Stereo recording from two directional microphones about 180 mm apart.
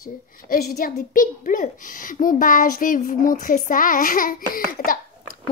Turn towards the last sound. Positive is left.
turn(degrees=50)  # may be behind; listen again after turning